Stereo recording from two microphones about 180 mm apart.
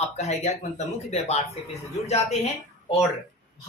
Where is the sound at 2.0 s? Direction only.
35° left (ahead or behind).